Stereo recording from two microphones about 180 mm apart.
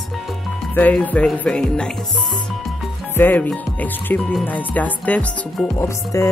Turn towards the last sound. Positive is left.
turn(degrees=15)  # may be behind; listen again after turning